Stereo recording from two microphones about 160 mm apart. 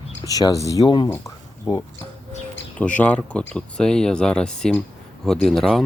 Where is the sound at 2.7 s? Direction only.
10° left (ahead or behind).